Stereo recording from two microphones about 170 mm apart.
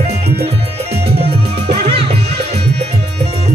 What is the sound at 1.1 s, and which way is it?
Music, 35° right (ahead or behind).